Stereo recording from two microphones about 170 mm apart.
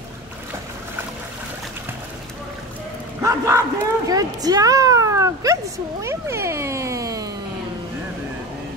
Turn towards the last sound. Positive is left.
turn(degrees=-20)  # may be behind; listen again after turning